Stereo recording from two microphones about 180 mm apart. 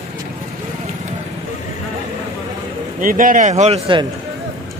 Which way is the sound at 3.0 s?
50° right (ahead or behind).